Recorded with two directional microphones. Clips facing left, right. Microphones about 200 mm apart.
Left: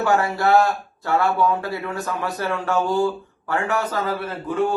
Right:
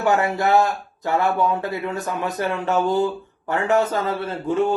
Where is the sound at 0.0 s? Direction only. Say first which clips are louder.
Even; 20° right (ahead or behind).